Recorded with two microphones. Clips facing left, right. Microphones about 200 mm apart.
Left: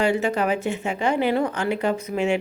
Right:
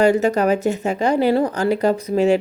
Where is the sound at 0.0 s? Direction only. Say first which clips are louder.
Right 6 dB; 40° right (ahead or behind).